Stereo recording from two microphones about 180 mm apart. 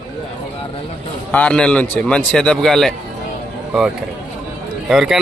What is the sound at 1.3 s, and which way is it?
Speech, 5° left (ahead or behind).